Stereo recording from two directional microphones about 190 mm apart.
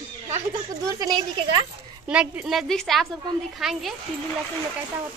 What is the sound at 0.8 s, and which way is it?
Speech, 20° right (ahead or behind).